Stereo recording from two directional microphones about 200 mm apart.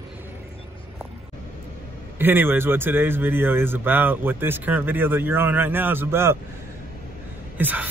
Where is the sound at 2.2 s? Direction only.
10° right (ahead or behind).